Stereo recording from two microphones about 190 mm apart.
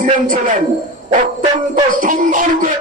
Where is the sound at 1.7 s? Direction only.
45° right (ahead or behind).